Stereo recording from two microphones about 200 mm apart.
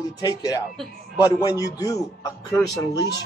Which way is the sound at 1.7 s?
15° left (ahead or behind).